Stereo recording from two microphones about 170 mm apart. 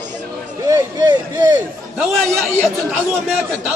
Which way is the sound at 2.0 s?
10° right (ahead or behind).